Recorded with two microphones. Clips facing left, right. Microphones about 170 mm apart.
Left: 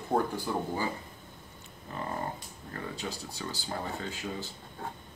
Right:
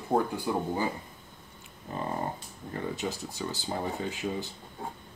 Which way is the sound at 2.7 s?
20° right (ahead or behind).